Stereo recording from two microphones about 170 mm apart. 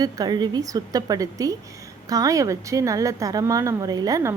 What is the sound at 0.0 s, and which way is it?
A woman's voice, 25° right (ahead or behind).